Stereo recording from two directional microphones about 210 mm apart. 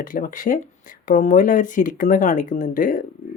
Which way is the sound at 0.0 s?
40° left (ahead or behind).